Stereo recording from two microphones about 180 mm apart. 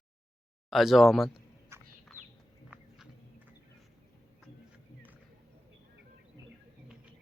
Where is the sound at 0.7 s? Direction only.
Centre (ahead or behind).